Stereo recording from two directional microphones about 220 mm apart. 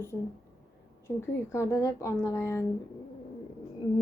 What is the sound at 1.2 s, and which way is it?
A woman's voice, 15° left (ahead or behind).